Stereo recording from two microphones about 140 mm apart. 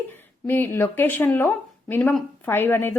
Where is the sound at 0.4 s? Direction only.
15° left (ahead or behind).